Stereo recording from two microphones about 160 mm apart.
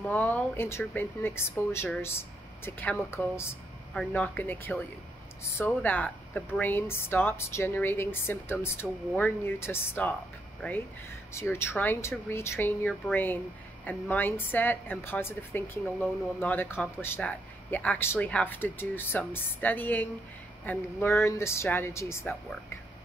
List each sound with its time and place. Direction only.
0.0 s a woman's voice: 10° left (ahead or behind)